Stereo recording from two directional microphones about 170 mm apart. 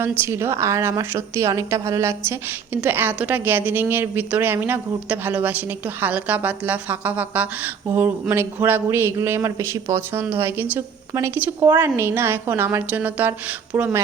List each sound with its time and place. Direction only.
0.0 s a woman's voice: 15° right (ahead or behind)